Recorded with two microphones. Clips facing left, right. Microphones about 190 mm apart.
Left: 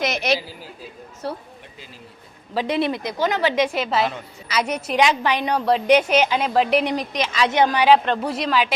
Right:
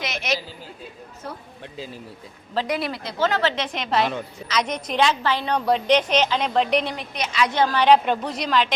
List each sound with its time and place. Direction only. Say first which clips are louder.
0.0 s a sound: left 5 dB; 40° left (ahead or behind)
2.6 s a woman's voice: left 4 dB; 25° left (ahead or behind)
5.5 s a woman's voice: left 3 dB; 5° left (ahead or behind)
7.4 s a woman's voice: left 2 dB; 20° left (ahead or behind)
7.9 s a woman's voice: left 1 dB; 5° right (ahead or behind)